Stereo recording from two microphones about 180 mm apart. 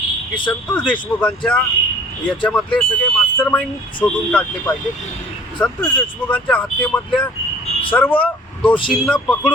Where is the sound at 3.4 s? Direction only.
10° left (ahead or behind).